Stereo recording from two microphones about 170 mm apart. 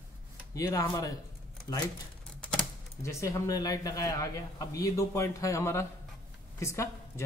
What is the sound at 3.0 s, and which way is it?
A man's voice, 15° left (ahead or behind).